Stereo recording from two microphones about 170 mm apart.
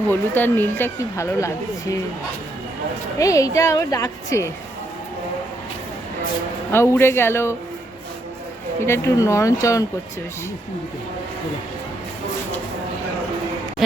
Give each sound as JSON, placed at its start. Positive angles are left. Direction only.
{"t": 0.1, "sound": "speech", "side_deg": 10}
{"t": 3.2, "sound": "a woman's voice", "side_deg": 20}
{"t": 6.7, "sound": "speech", "side_deg": 15}
{"t": 8.8, "sound": "a woman's voice", "side_deg": 15}